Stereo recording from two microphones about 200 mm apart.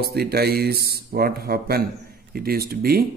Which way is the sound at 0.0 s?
50° right (ahead or behind).